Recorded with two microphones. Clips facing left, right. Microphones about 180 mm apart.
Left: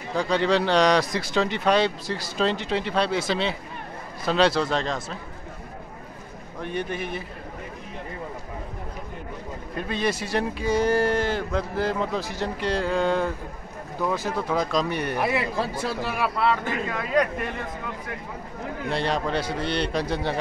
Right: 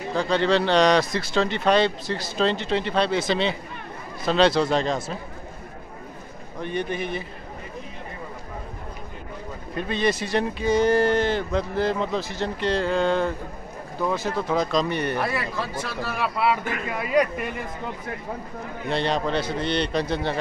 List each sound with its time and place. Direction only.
0.1 s speech: 10° left (ahead or behind)
6.6 s speech: 5° left (ahead or behind)
9.8 s speech: 5° left (ahead or behind)
15.3 s speech: 30° left (ahead or behind)
16.0 s speech: 10° left (ahead or behind)
16.3 s speech: 10° right (ahead or behind)
18.9 s speech: 10° left (ahead or behind)